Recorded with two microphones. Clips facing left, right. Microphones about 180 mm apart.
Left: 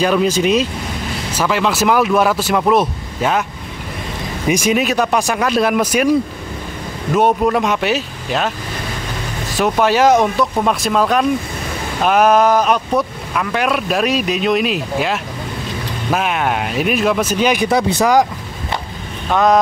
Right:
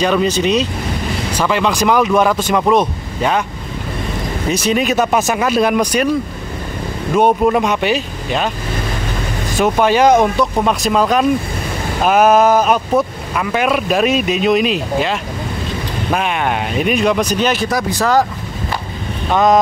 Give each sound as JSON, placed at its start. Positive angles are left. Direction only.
{"t": 0.0, "sound": "speech", "side_deg": 5}
{"t": 4.5, "sound": "speech", "side_deg": 10}
{"t": 4.8, "sound": "speech", "side_deg": 0}
{"t": 7.2, "sound": "speech", "side_deg": 0}
{"t": 9.6, "sound": "speech", "side_deg": 0}
{"t": 17.6, "sound": "speech", "side_deg": 25}
{"t": 19.3, "sound": "speech", "side_deg": 0}